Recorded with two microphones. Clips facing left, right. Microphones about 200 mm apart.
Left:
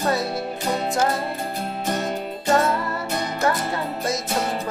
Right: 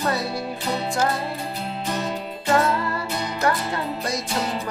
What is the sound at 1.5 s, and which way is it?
Music, 50° left (ahead or behind).